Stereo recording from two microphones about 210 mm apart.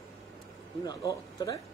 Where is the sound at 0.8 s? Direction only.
20° left (ahead or behind).